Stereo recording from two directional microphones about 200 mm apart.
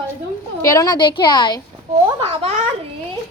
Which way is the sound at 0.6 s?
15° left (ahead or behind).